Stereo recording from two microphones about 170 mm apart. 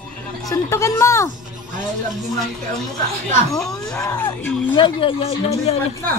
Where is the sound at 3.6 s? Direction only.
5° left (ahead or behind).